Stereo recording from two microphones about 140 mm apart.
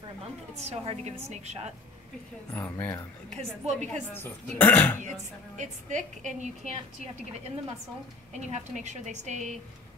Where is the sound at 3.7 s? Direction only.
55° right (ahead or behind).